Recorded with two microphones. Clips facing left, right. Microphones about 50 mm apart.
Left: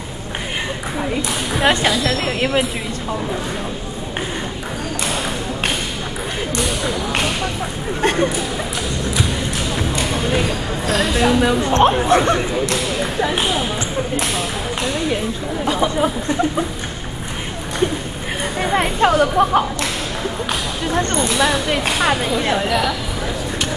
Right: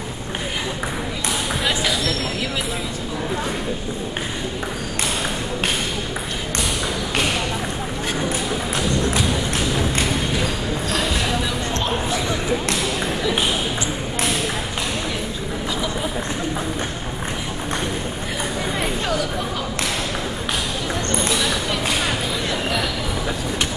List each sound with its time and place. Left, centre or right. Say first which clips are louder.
1.7 s speech: left 6 dB; left
8.0 s a sound: left 9 dB; left
10.9 s speech: left 8 dB; left
15.6 s a sound: left 9 dB; left
18.6 s speech: left 11 dB; left
21.2 s speech: left 4 dB; left